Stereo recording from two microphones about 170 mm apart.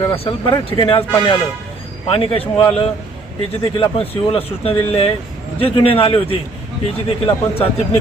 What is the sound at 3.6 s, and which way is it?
Speech, 35° left (ahead or behind).